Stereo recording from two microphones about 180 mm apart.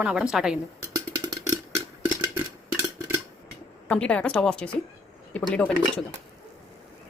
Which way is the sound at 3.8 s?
5° left (ahead or behind).